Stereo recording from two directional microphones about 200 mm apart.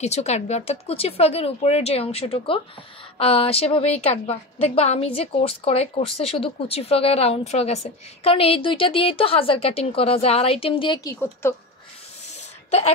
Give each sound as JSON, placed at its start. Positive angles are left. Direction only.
{"t": 0.0, "sound": "a woman's voice", "side_deg": 35}